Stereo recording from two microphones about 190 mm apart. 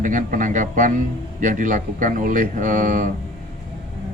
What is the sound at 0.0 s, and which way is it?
Speech, 45° right (ahead or behind).